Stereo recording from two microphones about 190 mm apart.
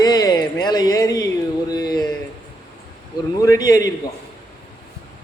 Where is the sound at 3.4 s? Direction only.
20° left (ahead or behind).